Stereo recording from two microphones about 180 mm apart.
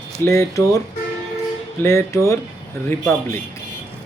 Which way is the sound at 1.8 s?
15° left (ahead or behind).